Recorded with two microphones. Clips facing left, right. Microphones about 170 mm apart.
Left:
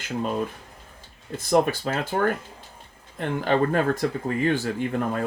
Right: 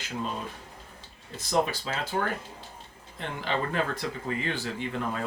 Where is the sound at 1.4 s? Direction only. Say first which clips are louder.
Left 6 dB; 55° left (ahead or behind).